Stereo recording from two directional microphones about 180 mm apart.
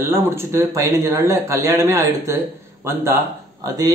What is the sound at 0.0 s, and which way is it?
A man's voice, 15° right (ahead or behind).